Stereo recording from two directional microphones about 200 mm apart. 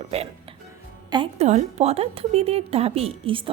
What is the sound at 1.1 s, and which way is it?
A woman's voice, 30° right (ahead or behind).